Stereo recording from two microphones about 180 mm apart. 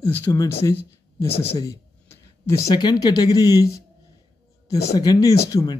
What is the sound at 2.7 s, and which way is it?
Speech, 25° left (ahead or behind).